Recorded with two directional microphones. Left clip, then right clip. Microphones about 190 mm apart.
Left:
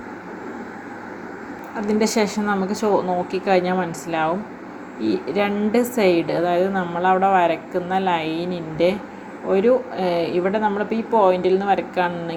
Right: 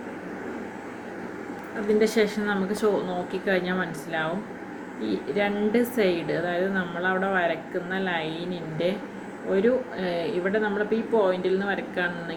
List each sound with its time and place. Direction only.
2.0 s a woman's voice: 25° left (ahead or behind)